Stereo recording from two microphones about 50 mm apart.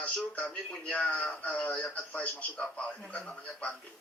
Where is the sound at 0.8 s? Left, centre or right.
Left.